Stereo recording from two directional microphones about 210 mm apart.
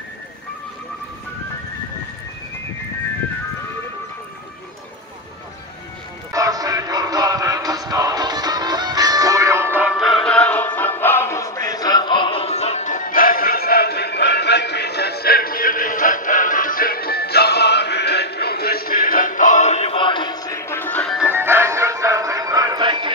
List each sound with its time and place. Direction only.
6.3 s music: 15° right (ahead or behind); by 21.3 s 5° left (ahead or behind)
21.3 s music: 10° right (ahead or behind)